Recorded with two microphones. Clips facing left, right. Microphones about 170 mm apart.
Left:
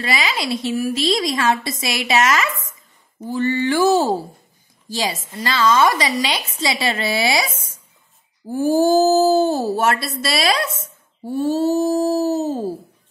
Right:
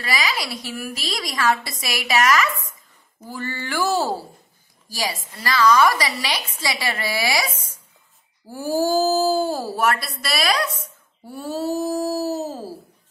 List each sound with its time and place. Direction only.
0.0 s speech: 25° left (ahead or behind)
8.5 s speech: 20° left (ahead or behind)